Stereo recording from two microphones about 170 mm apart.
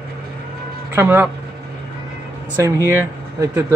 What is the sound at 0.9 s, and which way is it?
Speech, 15° right (ahead or behind).